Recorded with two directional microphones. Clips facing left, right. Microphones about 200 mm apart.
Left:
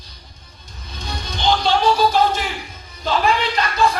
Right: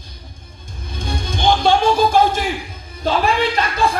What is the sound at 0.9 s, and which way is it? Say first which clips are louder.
Music: right 5 dB; 50° right (ahead or behind).